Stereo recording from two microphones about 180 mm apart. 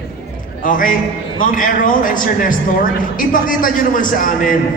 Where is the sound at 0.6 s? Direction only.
50° left (ahead or behind).